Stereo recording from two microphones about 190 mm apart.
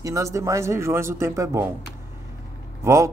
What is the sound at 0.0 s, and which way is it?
Speech, 15° right (ahead or behind).